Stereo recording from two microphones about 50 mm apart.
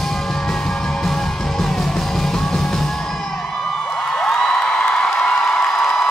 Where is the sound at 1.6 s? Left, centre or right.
Centre.